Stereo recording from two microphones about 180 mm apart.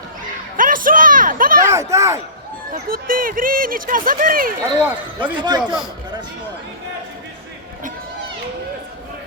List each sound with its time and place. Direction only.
0.5 s a sound: 50° right (ahead or behind)
1.6 s speech: 15° right (ahead or behind)
2.9 s speech: 50° right (ahead or behind)
4.8 s speech: 10° right (ahead or behind)
5.4 s a man's voice: 25° right (ahead or behind)